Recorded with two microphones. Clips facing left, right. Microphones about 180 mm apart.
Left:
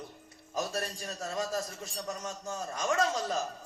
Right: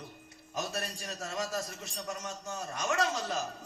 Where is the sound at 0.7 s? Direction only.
30° left (ahead or behind).